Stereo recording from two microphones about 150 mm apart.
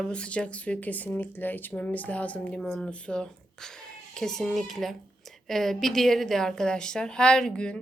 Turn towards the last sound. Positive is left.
turn(degrees=5)  # may be behind; listen again after turning